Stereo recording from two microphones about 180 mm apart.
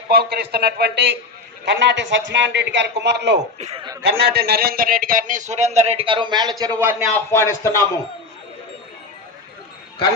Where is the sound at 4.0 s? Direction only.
65° right (ahead or behind); by 7.0 s 15° right (ahead or behind).